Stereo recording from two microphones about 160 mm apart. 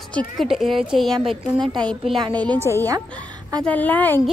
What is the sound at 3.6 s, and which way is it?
Speech, 10° left (ahead or behind).